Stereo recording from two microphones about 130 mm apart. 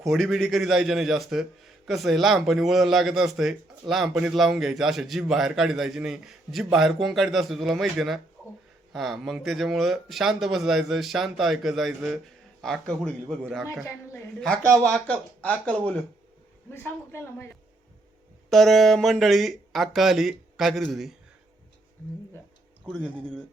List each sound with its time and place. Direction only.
0.0 s a man's voice: centre (ahead or behind)
14.8 s speech: 10° left (ahead or behind)
18.5 s a man's voice: centre (ahead or behind)
23.0 s speech: 10° right (ahead or behind)